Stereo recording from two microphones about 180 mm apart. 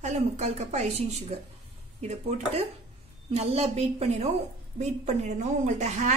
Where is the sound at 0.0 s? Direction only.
40° right (ahead or behind).